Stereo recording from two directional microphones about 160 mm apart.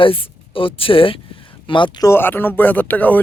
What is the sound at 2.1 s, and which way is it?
Speech, 15° left (ahead or behind).